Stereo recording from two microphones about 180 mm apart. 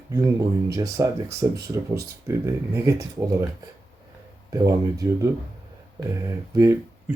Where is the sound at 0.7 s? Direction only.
20° right (ahead or behind).